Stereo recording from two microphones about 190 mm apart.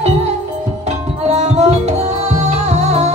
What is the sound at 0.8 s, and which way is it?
Tabla, 35° right (ahead or behind).